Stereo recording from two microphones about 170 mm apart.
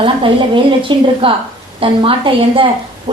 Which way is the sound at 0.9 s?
30° right (ahead or behind).